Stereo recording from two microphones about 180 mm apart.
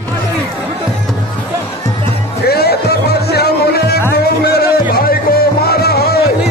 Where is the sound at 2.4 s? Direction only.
60° left (ahead or behind).